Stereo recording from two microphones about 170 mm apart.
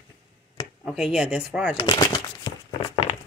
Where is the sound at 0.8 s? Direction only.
Centre (ahead or behind).